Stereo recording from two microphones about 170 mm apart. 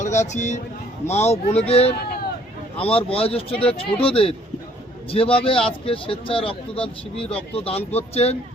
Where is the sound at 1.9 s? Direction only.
65° left (ahead or behind).